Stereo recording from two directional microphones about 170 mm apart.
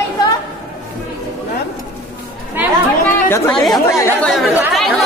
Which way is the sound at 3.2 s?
15° left (ahead or behind).